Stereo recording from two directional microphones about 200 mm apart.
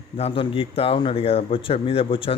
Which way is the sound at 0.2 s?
30° left (ahead or behind).